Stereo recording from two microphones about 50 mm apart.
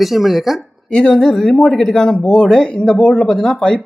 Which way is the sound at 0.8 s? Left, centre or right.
Centre.